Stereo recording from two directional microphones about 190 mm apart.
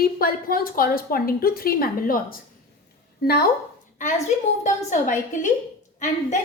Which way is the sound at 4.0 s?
40° left (ahead or behind).